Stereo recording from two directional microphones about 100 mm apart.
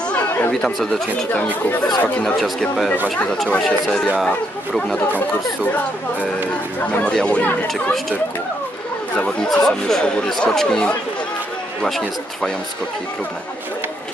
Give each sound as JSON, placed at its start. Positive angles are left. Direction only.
{"t": 0.1, "sound": "chatter", "side_deg": 20}
{"t": 0.5, "sound": "speech", "side_deg": 5}
{"t": 2.1, "sound": "speech", "side_deg": 5}
{"t": 7.0, "sound": "speech", "side_deg": 10}
{"t": 9.1, "sound": "speech", "side_deg": 10}